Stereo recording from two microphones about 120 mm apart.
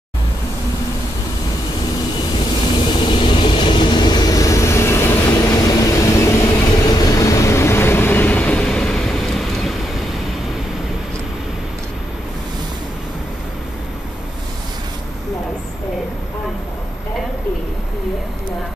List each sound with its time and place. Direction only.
3.0 s vehicle: 45° left (ahead or behind); by 5.1 s 20° left (ahead or behind)
5.3 s train: 30° left (ahead or behind); by 10.0 s centre (ahead or behind)